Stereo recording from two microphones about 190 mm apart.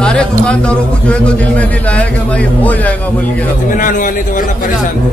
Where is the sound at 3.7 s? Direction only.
45° left (ahead or behind).